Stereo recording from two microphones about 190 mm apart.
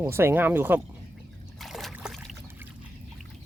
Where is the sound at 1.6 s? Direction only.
Centre (ahead or behind).